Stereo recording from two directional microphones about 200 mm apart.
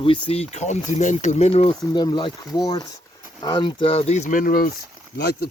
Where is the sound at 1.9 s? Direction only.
20° left (ahead or behind).